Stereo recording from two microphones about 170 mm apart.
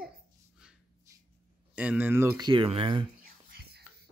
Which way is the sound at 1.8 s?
10° right (ahead or behind).